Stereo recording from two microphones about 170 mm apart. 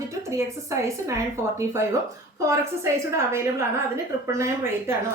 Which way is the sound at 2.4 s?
15° right (ahead or behind).